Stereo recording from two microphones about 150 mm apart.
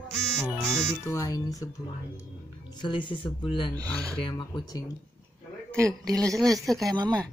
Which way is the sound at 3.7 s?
25° right (ahead or behind).